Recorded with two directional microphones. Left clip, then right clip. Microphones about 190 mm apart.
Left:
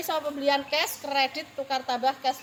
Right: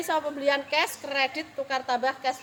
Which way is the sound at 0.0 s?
30° right (ahead or behind).